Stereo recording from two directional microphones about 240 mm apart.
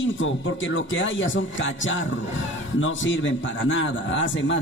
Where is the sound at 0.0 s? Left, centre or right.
Left.